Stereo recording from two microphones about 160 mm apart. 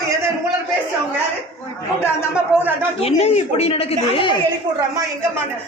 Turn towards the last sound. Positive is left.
turn(degrees=35)  # may be behind; listen again after turning